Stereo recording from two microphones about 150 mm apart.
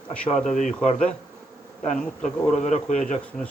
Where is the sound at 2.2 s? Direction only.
50° left (ahead or behind).